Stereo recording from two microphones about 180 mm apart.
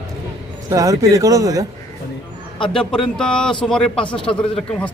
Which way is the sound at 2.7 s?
5° left (ahead or behind).